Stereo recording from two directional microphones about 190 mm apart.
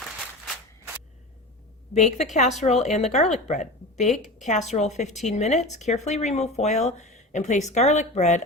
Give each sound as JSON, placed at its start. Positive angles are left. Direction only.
{"t": 1.9, "sound": "speech", "side_deg": 35}